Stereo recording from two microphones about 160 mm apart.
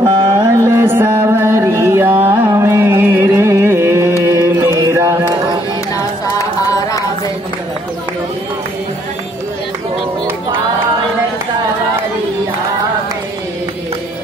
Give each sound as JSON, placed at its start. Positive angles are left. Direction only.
{"t": 0.0, "sound": "mantra", "side_deg": -30}
{"t": 2.2, "sound": "music", "side_deg": -15}
{"t": 4.3, "sound": "mantra", "side_deg": -20}
{"t": 6.3, "sound": "music", "side_deg": 20}